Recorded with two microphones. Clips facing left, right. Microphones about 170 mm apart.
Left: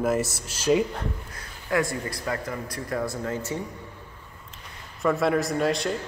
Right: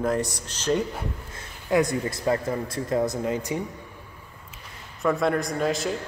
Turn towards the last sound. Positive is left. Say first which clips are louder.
# left 1 dB
turn(degrees=0)  # may be behind; listen again after turning